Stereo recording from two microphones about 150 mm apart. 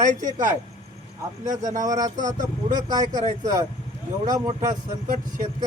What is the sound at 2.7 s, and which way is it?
Speech, 60° right (ahead or behind).